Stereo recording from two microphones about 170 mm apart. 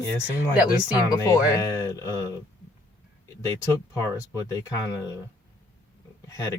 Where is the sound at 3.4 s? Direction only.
15° left (ahead or behind).